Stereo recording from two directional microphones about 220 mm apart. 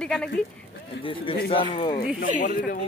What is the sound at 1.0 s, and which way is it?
Speech, 25° left (ahead or behind).